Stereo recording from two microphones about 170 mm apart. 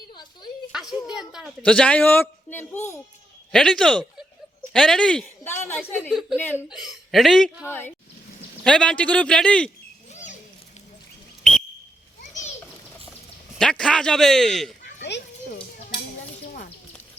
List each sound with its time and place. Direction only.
0.1 s a sound: 25° left (ahead or behind)
0.7 s a woman's voice: 5° right (ahead or behind)
6.0 s a woman's voice: 5° right (ahead or behind)
6.3 s a woman's voice: 10° left (ahead or behind)
6.7 s a woman's voice: centre (ahead or behind)
7.7 s a woman's voice: 10° left (ahead or behind)
12.3 s children playing: 45° left (ahead or behind)
13.6 s a woman's voice: 5° left (ahead or behind)